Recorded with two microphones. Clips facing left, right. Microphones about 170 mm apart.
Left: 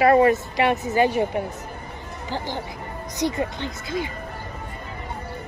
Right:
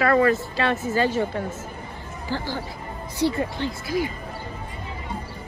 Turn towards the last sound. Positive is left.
turn(degrees=20)  # may be behind; listen again after turning